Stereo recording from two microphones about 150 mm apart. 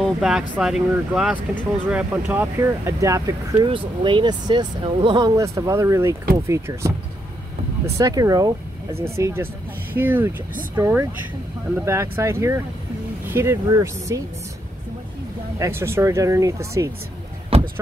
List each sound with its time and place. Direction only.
0.0 s speech: 5° right (ahead or behind); by 14.2 s 25° right (ahead or behind)
15.6 s speech: 15° right (ahead or behind)
17.5 s a sound: 40° right (ahead or behind)